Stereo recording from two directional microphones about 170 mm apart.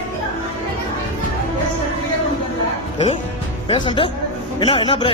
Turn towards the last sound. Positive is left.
turn(degrees=35)  # may be behind; listen again after turning